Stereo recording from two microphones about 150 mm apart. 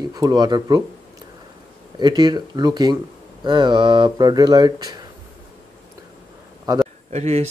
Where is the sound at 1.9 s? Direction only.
30° right (ahead or behind).